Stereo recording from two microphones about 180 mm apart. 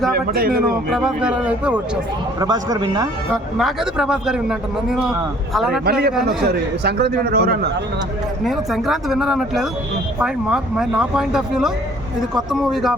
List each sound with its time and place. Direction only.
0.3 s a man's voice: 55° right (ahead or behind)
0.9 s a man's voice: centre (ahead or behind)
2.4 s speech: 20° right (ahead or behind)
3.3 s a man's voice: centre (ahead or behind)
5.8 s a man's voice: 60° right (ahead or behind)
8.4 s a man's voice: centre (ahead or behind)